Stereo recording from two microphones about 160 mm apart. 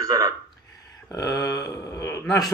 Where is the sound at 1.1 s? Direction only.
20° left (ahead or behind).